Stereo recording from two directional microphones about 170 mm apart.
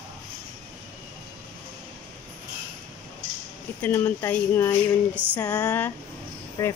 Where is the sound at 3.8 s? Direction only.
15° left (ahead or behind).